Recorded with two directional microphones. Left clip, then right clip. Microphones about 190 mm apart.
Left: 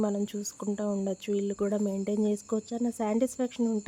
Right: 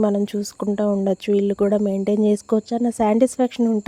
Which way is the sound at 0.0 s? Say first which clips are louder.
Right 10 dB; 35° right (ahead or behind).